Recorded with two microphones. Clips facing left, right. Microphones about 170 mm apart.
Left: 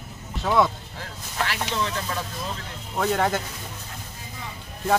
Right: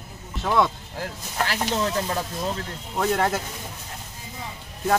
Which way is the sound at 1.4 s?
40° right (ahead or behind).